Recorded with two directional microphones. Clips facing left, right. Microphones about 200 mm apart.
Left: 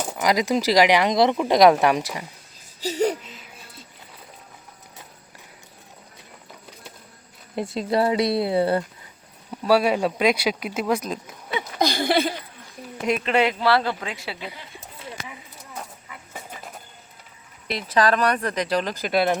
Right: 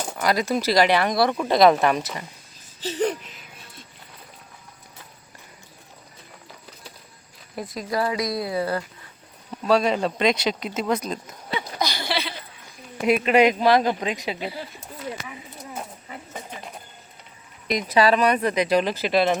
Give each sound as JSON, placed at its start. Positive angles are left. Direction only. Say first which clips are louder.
{"t": 0.2, "sound": "speech", "louder": "left 1 dB", "side_deg": 15}
{"t": 7.5, "sound": "speech", "louder": "left 4 dB", "side_deg": 25}
{"t": 9.5, "sound": "speech", "louder": "left 1 dB", "side_deg": 5}
{"t": 11.8, "sound": "a sound", "louder": "left 8 dB", "side_deg": 50}
{"t": 13.0, "sound": "speech", "louder": "right 4 dB", "side_deg": -10}
{"t": 17.7, "sound": "speech", "louder": "right 2 dB", "side_deg": -10}